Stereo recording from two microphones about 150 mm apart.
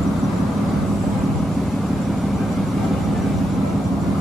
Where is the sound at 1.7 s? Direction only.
Centre (ahead or behind).